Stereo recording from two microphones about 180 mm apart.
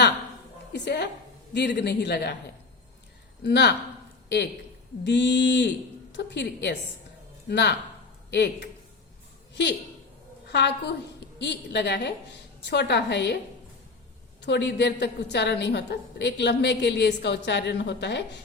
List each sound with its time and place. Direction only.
0.7 s a woman's voice: 70° left (ahead or behind)
3.4 s a woman's voice: 70° left (ahead or behind)
5.0 s a woman's voice: 75° left (ahead or behind)
10.5 s a woman's voice: 70° left (ahead or behind)
14.4 s a woman's voice: 70° left (ahead or behind)